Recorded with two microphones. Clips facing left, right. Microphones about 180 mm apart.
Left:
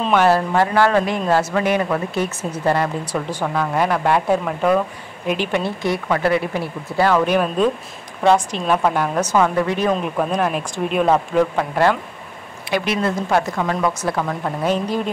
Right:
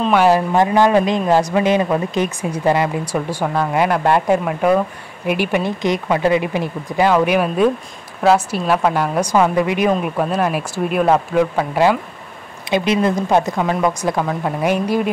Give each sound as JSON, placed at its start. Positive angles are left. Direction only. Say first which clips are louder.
{"t": 0.0, "sound": "a man's voice", "louder": "right 2 dB", "side_deg": -10}
{"t": 12.7, "sound": "speech", "louder": "right 4 dB", "side_deg": -20}